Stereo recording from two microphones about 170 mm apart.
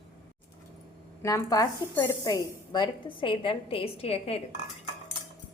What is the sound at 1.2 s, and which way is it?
Speech, 20° left (ahead or behind).